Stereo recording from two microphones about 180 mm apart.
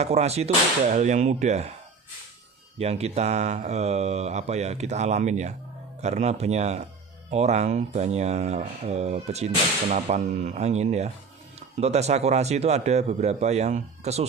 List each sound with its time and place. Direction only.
0.0 s speech: 35° right (ahead or behind)
2.8 s speech: 35° right (ahead or behind)